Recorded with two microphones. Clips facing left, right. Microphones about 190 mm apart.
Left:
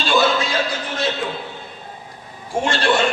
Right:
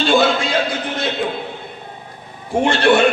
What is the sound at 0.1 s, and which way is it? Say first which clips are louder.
Music: right 1 dB; 55° right (ahead or behind).